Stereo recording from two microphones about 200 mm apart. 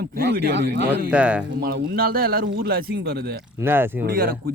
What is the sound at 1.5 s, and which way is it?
Speech, 55° right (ahead or behind).